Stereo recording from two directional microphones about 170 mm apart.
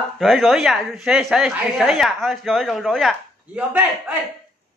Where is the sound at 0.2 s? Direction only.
Centre (ahead or behind).